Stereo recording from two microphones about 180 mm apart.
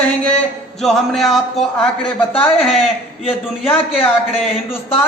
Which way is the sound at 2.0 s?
30° left (ahead or behind).